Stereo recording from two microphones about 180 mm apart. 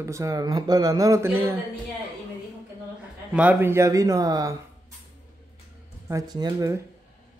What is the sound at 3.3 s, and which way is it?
A man's voice, 10° right (ahead or behind).